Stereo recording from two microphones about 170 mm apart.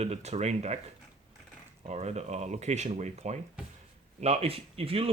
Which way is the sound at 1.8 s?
40° right (ahead or behind).